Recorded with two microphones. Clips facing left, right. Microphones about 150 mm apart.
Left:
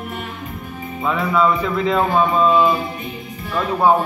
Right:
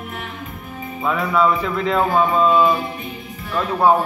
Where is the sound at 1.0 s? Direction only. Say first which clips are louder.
Even; centre (ahead or behind).